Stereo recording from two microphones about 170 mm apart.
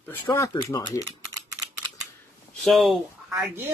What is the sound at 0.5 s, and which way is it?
Speech, 25° left (ahead or behind).